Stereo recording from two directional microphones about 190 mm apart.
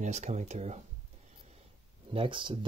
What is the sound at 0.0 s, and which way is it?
Speech, 40° right (ahead or behind).